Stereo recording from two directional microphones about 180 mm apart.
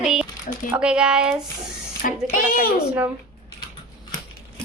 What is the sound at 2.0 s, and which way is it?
Speech, 50° left (ahead or behind).